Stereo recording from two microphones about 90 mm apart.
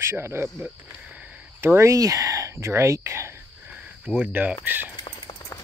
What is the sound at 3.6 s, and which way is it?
Cricket, 15° right (ahead or behind).